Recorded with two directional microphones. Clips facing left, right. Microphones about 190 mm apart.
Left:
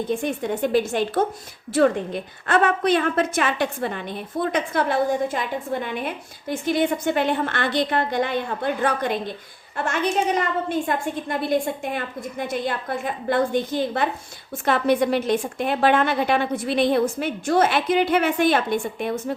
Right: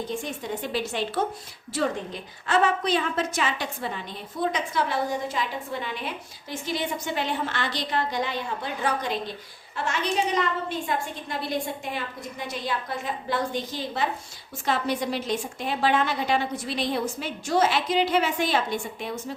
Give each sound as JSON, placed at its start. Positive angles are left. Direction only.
{"t": 0.1, "sound": "a woman's voice", "side_deg": 55}